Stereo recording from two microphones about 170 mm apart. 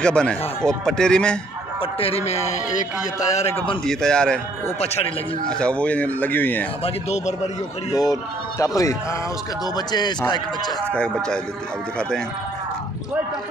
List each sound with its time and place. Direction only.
0.0 s a man's voice: 5° left (ahead or behind)
1.8 s a man's voice: 35° left (ahead or behind)
3.8 s a man's voice: 5° left (ahead or behind)
4.7 s a man's voice: 40° left (ahead or behind)
5.5 s speech: 5° left (ahead or behind)
6.8 s a man's voice: 40° left (ahead or behind)
7.9 s speech: 20° left (ahead or behind)
10.9 s a man's voice: 5° left (ahead or behind)